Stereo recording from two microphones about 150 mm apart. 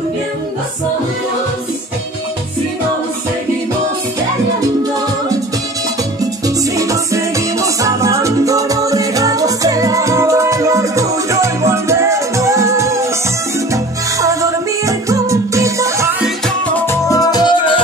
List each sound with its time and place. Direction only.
6.4 s music: 20° right (ahead or behind)
14.2 s music: 20° right (ahead or behind)
16.4 s music: 15° left (ahead or behind); by 17.8 s 30° left (ahead or behind)